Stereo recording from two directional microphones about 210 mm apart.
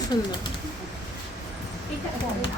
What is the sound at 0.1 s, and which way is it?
Speech, 20° left (ahead or behind).